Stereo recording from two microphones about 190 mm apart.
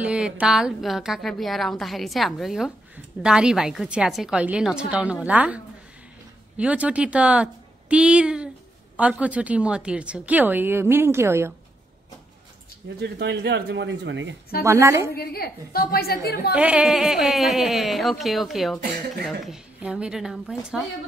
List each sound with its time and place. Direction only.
0.0 s a woman's voice: 5° right (ahead or behind)
13.0 s speech: 65° right (ahead or behind)
14.6 s a woman's voice: 15° right (ahead or behind)
15.1 s a woman's voice: 55° left (ahead or behind)
16.5 s a woman's voice: 5° right (ahead or behind)